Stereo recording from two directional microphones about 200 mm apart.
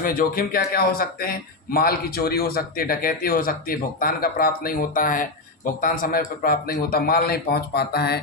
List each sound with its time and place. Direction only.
0.0 s speech: 45° left (ahead or behind)